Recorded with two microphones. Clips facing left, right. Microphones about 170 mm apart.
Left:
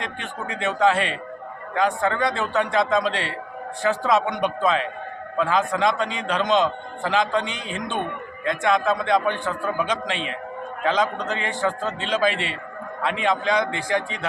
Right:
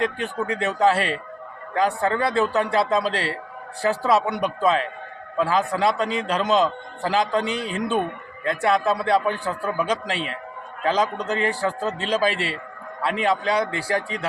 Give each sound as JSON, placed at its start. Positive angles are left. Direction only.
{"t": 0.0, "sound": "a man's voice", "side_deg": -35}
{"t": 6.4, "sound": "a man's voice", "side_deg": -5}
{"t": 7.0, "sound": "a man's voice", "side_deg": -35}